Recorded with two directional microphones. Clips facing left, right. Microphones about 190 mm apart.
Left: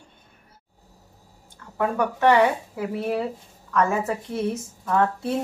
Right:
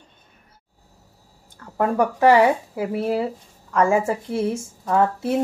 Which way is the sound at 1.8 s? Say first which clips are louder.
Right 4 dB; 30° right (ahead or behind).